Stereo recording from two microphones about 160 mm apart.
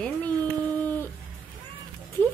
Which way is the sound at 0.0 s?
10° left (ahead or behind).